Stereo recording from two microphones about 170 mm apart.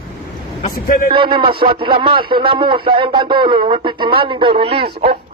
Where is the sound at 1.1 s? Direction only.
30° right (ahead or behind).